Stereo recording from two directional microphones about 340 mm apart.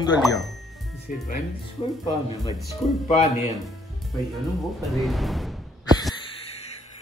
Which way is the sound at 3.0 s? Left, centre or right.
Centre.